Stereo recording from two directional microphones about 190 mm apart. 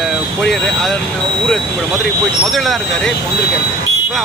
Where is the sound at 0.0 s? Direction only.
Centre (ahead or behind).